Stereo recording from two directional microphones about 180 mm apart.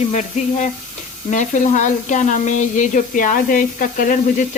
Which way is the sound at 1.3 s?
45° left (ahead or behind).